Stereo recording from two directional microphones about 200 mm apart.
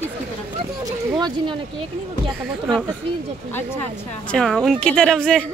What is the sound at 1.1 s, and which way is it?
Speech, 20° right (ahead or behind).